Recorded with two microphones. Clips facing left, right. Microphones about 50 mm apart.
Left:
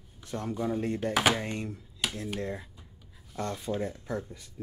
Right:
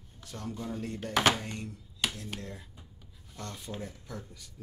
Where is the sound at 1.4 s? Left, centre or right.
Left.